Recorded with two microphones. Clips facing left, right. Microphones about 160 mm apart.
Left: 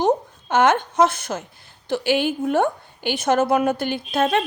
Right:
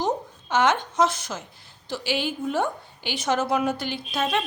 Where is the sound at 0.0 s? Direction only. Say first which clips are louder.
Left 6 dB; 55° left (ahead or behind).